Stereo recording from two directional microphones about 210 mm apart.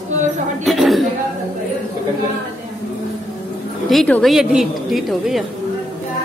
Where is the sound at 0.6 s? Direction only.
Centre (ahead or behind).